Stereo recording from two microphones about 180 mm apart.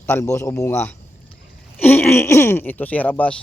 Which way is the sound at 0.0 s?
15° left (ahead or behind).